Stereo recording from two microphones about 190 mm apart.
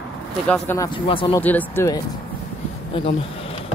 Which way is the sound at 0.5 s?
10° left (ahead or behind).